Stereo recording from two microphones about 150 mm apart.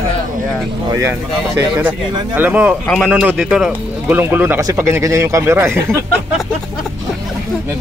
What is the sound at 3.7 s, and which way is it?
Speech, 10° right (ahead or behind).